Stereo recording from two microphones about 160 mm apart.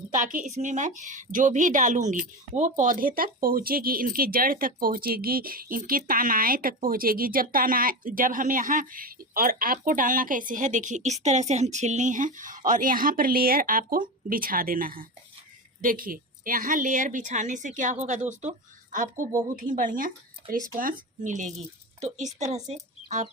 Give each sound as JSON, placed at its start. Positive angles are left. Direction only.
{"t": 0.1, "sound": "a woman's voice", "side_deg": -55}